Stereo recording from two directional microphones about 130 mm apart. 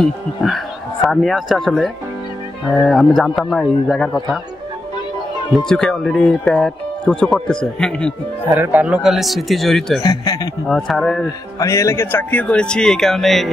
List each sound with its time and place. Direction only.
0.0 s speech: centre (ahead or behind)
5.7 s speech: 5° left (ahead or behind)
8.5 s speech: 10° right (ahead or behind)
10.0 s a man's voice: 30° left (ahead or behind)
10.7 s speech: centre (ahead or behind)
11.6 s speech: 25° left (ahead or behind); by 13.5 s centre (ahead or behind)